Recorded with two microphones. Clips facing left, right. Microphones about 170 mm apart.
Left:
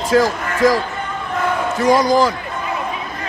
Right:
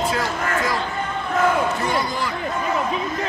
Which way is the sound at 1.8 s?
90° left.